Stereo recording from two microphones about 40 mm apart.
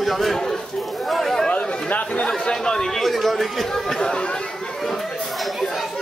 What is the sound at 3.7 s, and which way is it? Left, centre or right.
Speech, centre.